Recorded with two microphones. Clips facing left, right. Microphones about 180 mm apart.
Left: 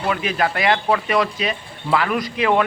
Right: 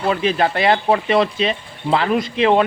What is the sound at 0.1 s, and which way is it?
Speech, 30° right (ahead or behind).